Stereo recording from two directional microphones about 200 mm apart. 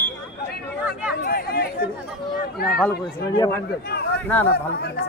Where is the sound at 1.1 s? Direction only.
50° left (ahead or behind).